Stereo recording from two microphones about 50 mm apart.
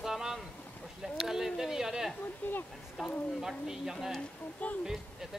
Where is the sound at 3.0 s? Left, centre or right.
Centre.